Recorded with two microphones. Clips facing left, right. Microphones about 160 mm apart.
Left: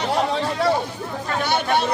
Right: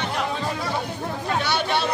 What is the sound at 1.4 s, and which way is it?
Speech, 50° left (ahead or behind).